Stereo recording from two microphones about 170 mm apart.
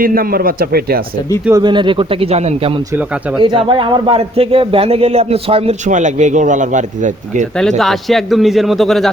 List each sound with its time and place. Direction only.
0.0 s a man's voice: 55° right (ahead or behind)
1.6 s speech: 30° right (ahead or behind)
3.3 s speech: 25° right (ahead or behind); by 7.4 s 45° right (ahead or behind)
7.8 s speech: centre (ahead or behind)